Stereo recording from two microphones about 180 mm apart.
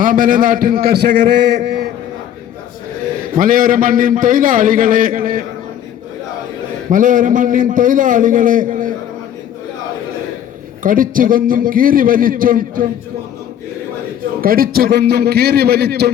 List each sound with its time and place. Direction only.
0.0 s a man's voice: 50° right (ahead or behind); by 1.5 s 70° right (ahead or behind)
3.3 s a man's voice: 50° right (ahead or behind)
6.9 s a man's voice: 45° right (ahead or behind)
10.8 s a man's voice: 50° right (ahead or behind)
14.4 s a man's voice: 55° right (ahead or behind)